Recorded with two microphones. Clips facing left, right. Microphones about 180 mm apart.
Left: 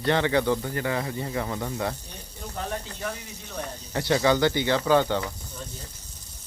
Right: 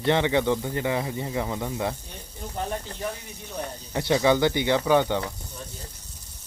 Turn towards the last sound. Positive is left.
turn(degrees=-15)  # may be behind; listen again after turning